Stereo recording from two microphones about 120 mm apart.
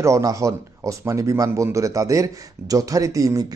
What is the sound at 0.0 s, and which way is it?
Speech, 25° right (ahead or behind).